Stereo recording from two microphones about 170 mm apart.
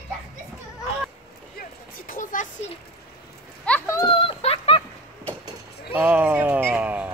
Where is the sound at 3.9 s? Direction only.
30° left (ahead or behind).